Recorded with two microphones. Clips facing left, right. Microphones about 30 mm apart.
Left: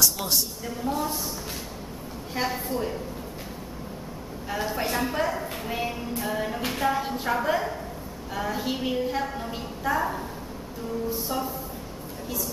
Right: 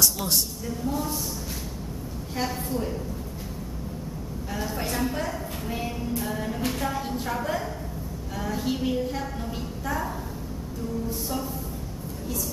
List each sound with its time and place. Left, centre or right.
0.7 s a woman's voice: left
2.3 s a woman's voice: centre
4.5 s a woman's voice: centre